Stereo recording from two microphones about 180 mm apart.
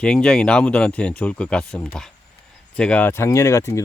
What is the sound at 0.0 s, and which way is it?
Speech, 5° left (ahead or behind).